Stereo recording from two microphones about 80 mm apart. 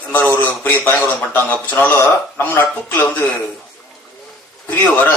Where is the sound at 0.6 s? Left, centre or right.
Left.